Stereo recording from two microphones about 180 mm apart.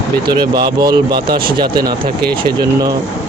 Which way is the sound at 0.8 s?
25° right (ahead or behind).